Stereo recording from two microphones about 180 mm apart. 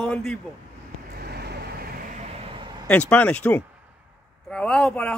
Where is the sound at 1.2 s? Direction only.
65° right (ahead or behind).